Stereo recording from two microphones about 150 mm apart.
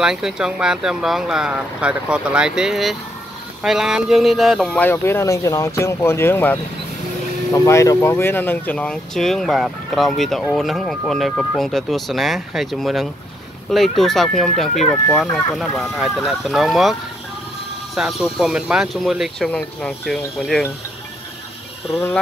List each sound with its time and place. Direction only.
0.0 s speech: 5° right (ahead or behind)
4.7 s speech: 15° left (ahead or behind); by 16.9 s centre (ahead or behind)
17.9 s speech: 5° right (ahead or behind)